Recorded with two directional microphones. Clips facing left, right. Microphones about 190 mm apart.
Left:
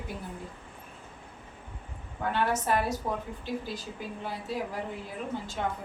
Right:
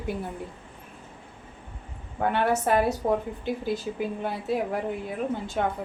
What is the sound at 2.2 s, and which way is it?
A woman's voice, 60° right (ahead or behind).